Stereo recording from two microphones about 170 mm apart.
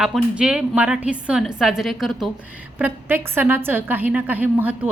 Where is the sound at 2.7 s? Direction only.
10° right (ahead or behind).